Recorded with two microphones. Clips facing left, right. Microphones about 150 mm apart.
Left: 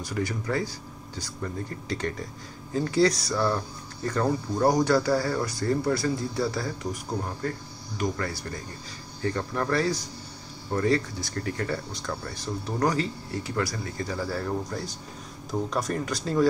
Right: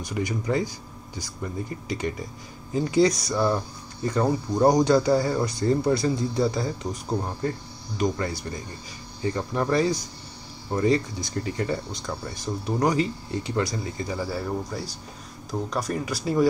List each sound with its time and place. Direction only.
0.0 s speech: 15° right (ahead or behind)